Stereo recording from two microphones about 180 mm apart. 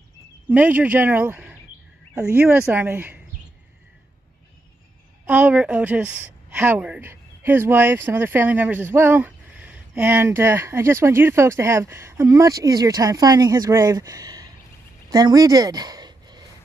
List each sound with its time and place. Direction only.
0.5 s speech: 10° right (ahead or behind)
5.2 s speech: 10° right (ahead or behind)
15.0 s a sound: 20° right (ahead or behind)